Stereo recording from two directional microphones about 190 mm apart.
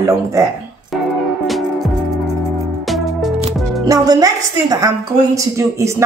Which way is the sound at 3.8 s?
20° right (ahead or behind).